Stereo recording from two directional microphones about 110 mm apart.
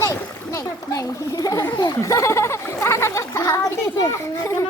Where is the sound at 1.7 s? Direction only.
35° left (ahead or behind).